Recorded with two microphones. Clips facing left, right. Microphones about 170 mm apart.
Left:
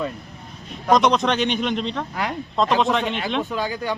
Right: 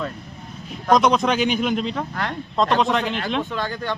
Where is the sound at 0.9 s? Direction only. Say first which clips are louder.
Even; centre (ahead or behind).